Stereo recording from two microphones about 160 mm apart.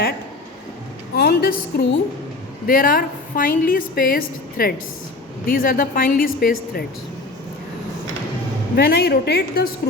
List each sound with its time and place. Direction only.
1.1 s a woman's voice: 70° left (ahead or behind)
8.7 s a woman's voice: 85° left